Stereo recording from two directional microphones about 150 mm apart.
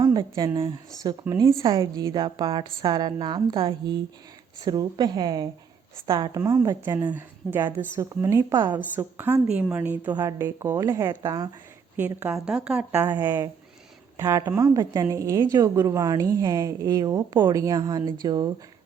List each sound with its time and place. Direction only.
0.0 s a woman's voice: 30° right (ahead or behind)
1.5 s a woman's voice: 35° right (ahead or behind)
1.8 s a woman's voice: 25° right (ahead or behind)
8.5 s a woman's voice: 30° right (ahead or behind)
9.0 s a woman's voice: 15° right (ahead or behind)
10.1 s a woman's voice: 25° right (ahead or behind)